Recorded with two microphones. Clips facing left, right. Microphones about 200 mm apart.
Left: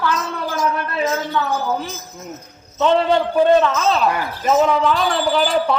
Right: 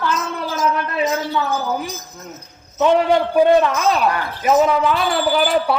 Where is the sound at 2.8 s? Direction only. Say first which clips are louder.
Right 1 dB; 15° right (ahead or behind).